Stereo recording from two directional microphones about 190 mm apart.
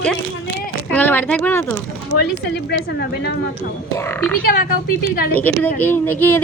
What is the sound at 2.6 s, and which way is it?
Speech, 60° left (ahead or behind).